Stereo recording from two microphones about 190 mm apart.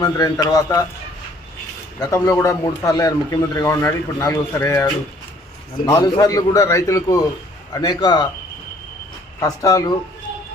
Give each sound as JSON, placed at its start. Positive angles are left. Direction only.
{"t": 0.0, "sound": "a man's voice", "side_deg": 20}
{"t": 2.0, "sound": "a man's voice", "side_deg": 15}
{"t": 9.4, "sound": "a man's voice", "side_deg": 15}